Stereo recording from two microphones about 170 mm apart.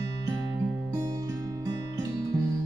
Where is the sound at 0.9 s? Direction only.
20° right (ahead or behind).